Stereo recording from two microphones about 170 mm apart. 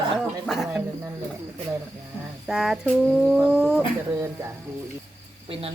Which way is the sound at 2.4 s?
5° right (ahead or behind).